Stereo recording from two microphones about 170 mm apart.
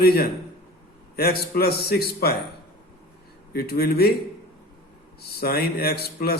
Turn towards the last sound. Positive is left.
turn(degrees=65)  # may be behind; listen again after turning